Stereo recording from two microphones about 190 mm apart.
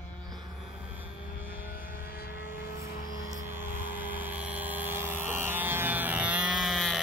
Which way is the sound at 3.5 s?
10° right (ahead or behind).